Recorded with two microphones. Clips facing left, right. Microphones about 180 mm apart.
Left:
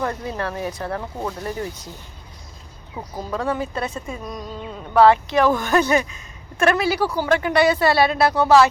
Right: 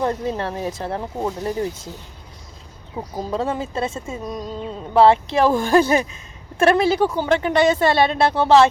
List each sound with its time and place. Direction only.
0.0 s speech: 25° right (ahead or behind)
3.2 s speech: 25° right (ahead or behind)